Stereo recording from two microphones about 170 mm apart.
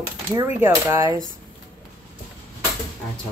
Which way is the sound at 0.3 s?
15° right (ahead or behind).